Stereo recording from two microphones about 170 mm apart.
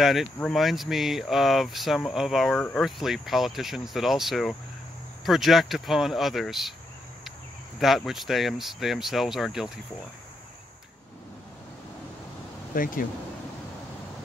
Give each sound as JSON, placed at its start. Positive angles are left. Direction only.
{"t": 0.0, "sound": "speech", "side_deg": 0}
{"t": 7.8, "sound": "speech", "side_deg": 0}
{"t": 12.7, "sound": "speech", "side_deg": 55}